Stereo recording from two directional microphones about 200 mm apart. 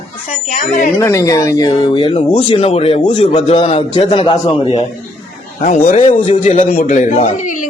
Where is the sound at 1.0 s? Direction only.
15° left (ahead or behind).